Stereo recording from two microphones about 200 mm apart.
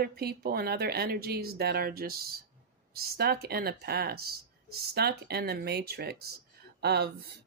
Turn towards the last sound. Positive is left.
turn(degrees=-55)  # may be behind; listen again after turning